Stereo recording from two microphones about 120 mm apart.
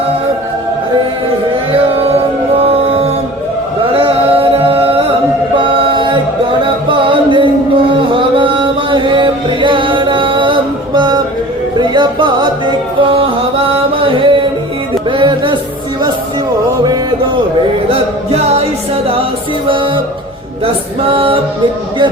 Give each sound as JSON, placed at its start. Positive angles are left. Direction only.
{"t": 2.6, "sound": "music", "side_deg": -55}
{"t": 5.5, "sound": "mantra", "side_deg": -45}
{"t": 6.6, "sound": "music", "side_deg": -45}
{"t": 17.9, "sound": "music", "side_deg": -55}
{"t": 19.6, "sound": "music", "side_deg": -45}
{"t": 21.1, "sound": "music", "side_deg": -50}